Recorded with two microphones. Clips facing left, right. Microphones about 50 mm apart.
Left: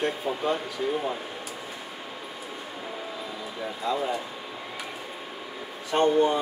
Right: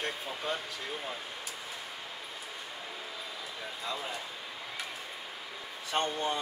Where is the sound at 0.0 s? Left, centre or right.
Centre.